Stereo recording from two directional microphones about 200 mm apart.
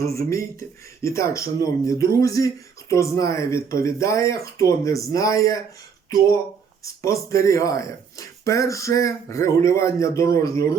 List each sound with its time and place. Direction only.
0.0 s speech: 15° left (ahead or behind)
7.0 s speech: 15° left (ahead or behind)